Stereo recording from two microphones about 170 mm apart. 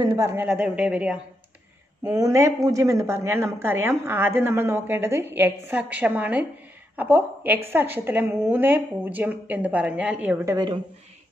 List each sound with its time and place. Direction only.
0.0 s a woman's voice: 15° right (ahead or behind)
2.0 s a woman's voice: 15° right (ahead or behind)